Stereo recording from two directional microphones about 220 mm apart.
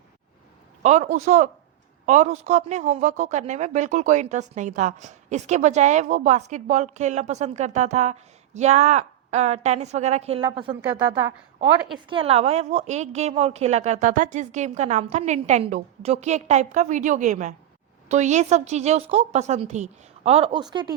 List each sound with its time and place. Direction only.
0.8 s a woman's voice: 30° right (ahead or behind)
12.0 s a woman's voice: 25° right (ahead or behind)